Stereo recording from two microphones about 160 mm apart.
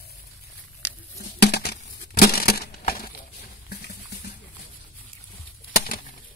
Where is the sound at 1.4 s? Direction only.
90° left.